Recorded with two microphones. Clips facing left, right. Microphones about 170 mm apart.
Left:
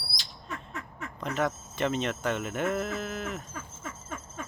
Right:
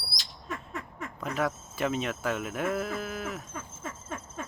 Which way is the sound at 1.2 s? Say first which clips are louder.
Left 1 dB; 5° right (ahead or behind).